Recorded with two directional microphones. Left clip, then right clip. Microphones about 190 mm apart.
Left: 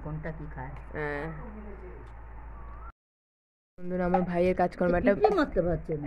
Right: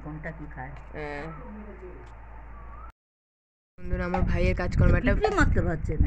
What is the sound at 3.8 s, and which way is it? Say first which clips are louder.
Speech: left 3 dB; 15° left (ahead or behind).